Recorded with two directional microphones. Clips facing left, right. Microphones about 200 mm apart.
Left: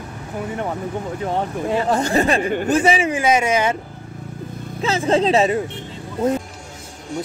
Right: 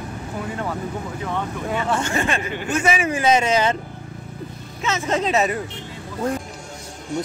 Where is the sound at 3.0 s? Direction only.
15° left (ahead or behind).